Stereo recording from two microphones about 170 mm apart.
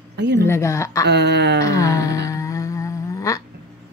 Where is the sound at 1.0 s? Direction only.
80° right.